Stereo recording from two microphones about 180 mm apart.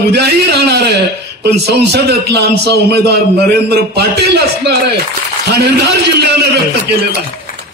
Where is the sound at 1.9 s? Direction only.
65° right (ahead or behind).